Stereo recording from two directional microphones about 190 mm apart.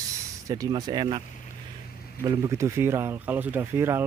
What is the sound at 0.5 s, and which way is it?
Speech, 20° right (ahead or behind).